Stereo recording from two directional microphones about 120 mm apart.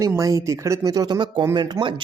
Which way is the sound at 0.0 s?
25° right (ahead or behind).